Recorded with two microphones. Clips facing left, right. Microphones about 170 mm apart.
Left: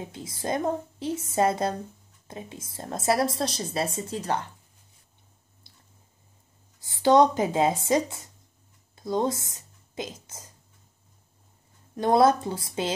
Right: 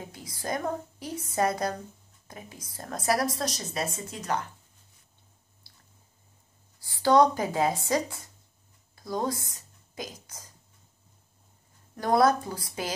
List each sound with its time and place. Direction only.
0.1 s a woman's voice: 25° left (ahead or behind)
5.7 s squish: 20° left (ahead or behind)
6.8 s a woman's voice: 20° left (ahead or behind)
8.9 s a sound: 20° left (ahead or behind)
11.9 s a woman's voice: 25° left (ahead or behind)